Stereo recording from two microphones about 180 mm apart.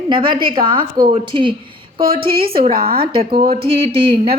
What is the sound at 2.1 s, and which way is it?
Speech, 55° right (ahead or behind).